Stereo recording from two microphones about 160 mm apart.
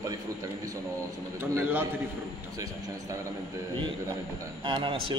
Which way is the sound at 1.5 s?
15° right (ahead or behind).